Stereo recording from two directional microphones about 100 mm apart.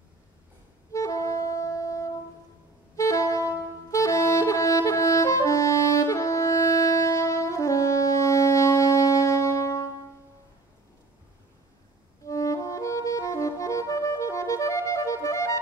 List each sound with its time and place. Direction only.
0.9 s saxophone: 35° left (ahead or behind)
12.3 s saxophone: 35° left (ahead or behind)